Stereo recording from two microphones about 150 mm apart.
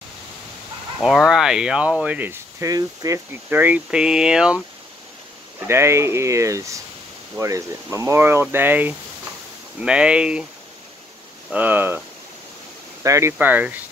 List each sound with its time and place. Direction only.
1.0 s speech: 5° right (ahead or behind); by 3.2 s 20° right (ahead or behind)
3.4 s speech: 10° right (ahead or behind)
5.7 s speech: 15° right (ahead or behind)
11.5 s speech: 10° right (ahead or behind)
13.0 s speech: 20° right (ahead or behind)